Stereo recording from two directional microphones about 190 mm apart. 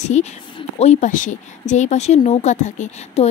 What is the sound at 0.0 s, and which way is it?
Speech, 35° left (ahead or behind).